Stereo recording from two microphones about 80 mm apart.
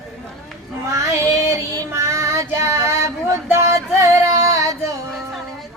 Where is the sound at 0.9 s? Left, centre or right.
Right.